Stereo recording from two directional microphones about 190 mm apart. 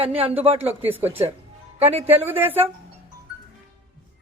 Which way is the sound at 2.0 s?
10° right (ahead or behind).